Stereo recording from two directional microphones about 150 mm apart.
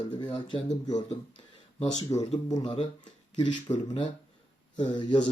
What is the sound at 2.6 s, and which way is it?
A man's voice, 40° left (ahead or behind).